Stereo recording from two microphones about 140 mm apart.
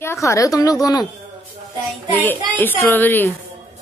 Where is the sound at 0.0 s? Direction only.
20° left (ahead or behind).